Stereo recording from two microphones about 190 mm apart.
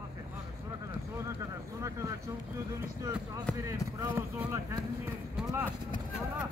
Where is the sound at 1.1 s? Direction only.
15° right (ahead or behind).